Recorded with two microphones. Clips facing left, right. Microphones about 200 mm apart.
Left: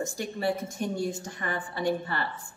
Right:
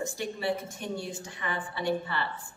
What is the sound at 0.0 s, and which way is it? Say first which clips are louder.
A woman's voice: left 2 dB; 45° left (ahead or behind).